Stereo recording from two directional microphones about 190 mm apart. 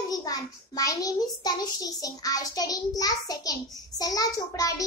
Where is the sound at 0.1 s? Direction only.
20° left (ahead or behind).